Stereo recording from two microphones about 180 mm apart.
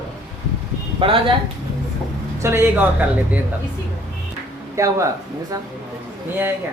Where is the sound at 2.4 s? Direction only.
15° right (ahead or behind).